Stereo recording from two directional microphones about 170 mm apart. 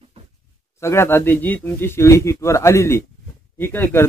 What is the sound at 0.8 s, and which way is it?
Speech, 15° left (ahead or behind).